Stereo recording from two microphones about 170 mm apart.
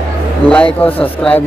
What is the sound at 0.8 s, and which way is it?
Speech, 10° left (ahead or behind).